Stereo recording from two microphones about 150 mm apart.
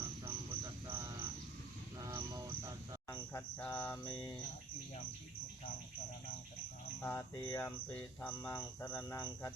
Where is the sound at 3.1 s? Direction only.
20° left (ahead or behind).